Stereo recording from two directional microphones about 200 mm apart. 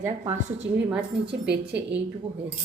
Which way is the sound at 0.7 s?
65° right (ahead or behind).